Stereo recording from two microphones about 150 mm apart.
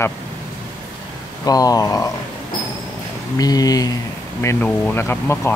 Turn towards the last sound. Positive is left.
turn(degrees=15)  # may be behind; listen again after turning